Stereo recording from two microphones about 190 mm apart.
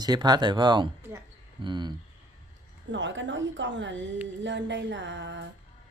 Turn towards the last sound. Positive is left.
turn(degrees=-70)  # may be behind; listen again after turning